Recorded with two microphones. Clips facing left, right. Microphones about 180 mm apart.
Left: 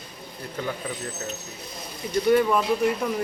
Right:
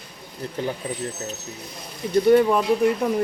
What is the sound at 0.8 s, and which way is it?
Speech, 30° right (ahead or behind).